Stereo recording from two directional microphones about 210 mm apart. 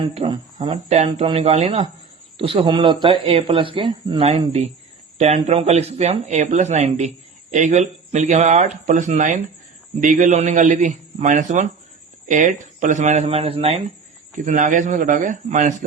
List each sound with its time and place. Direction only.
0.0 s speech: 25° right (ahead or behind)